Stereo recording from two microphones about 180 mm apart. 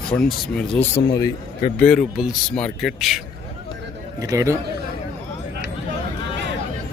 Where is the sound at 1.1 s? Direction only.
20° left (ahead or behind).